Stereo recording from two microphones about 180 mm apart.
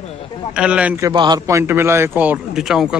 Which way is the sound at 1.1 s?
25° right (ahead or behind).